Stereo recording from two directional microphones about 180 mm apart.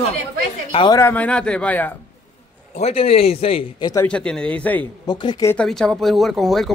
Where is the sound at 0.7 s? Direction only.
25° left (ahead or behind).